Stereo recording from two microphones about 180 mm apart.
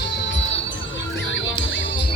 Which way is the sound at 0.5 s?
90° left.